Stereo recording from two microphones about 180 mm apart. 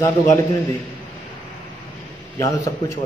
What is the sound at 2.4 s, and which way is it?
Speech, 20° left (ahead or behind).